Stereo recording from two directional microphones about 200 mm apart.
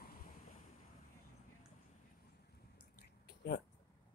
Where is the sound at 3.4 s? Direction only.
60° left (ahead or behind).